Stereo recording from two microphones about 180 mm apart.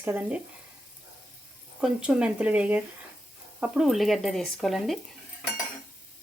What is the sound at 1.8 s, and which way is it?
Speech, 5° right (ahead or behind).